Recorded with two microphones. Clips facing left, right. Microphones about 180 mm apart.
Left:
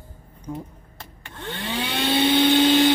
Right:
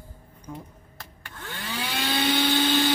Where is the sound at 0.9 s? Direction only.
25° left (ahead or behind).